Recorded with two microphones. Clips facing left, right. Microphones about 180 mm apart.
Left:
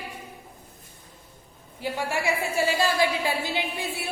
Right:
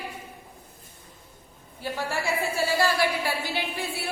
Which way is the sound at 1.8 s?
15° left (ahead or behind).